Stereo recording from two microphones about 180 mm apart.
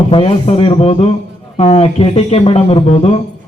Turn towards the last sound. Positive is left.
turn(degrees=35)  # may be behind; listen again after turning